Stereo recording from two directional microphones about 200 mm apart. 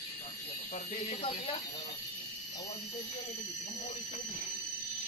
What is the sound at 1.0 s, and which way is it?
Speech, 35° left (ahead or behind).